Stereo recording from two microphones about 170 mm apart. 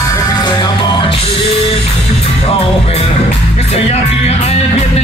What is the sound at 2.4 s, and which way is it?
Music, 35° left (ahead or behind).